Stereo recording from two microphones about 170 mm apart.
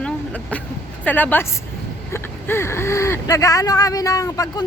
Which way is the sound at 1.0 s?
10° left (ahead or behind).